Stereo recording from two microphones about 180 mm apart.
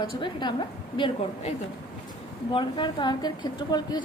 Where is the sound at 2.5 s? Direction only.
25° left (ahead or behind).